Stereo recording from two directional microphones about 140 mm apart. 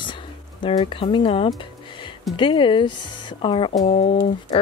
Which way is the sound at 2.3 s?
35° left (ahead or behind).